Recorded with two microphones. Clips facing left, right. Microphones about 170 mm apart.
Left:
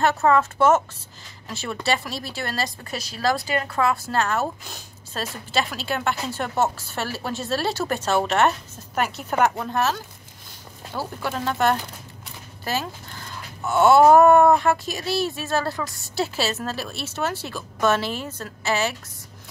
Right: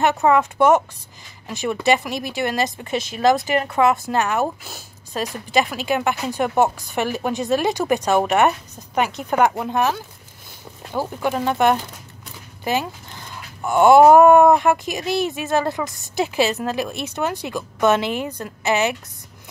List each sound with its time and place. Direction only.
0.0 s speech: 15° right (ahead or behind)